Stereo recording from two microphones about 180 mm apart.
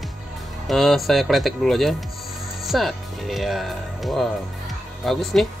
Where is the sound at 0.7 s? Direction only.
Centre (ahead or behind).